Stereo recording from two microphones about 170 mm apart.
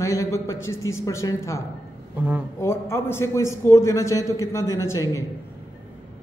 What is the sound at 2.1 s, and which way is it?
Speech, 10° right (ahead or behind).